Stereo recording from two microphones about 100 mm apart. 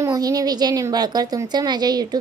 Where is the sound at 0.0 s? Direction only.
35° right (ahead or behind).